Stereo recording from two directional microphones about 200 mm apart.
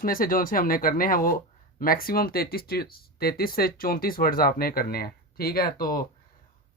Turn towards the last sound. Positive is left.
turn(degrees=45)  # may be behind; listen again after turning